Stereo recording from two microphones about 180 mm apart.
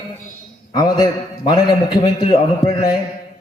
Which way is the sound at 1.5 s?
25° left (ahead or behind).